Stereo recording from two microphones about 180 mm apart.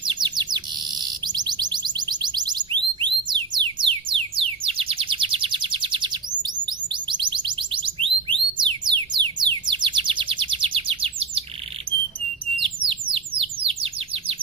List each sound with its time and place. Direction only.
0.0 s bird: 25° right (ahead or behind)
12.5 s bird: 30° right (ahead or behind)